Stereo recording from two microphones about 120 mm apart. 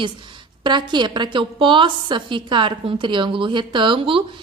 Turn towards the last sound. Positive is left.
turn(degrees=-45)  # may be behind; listen again after turning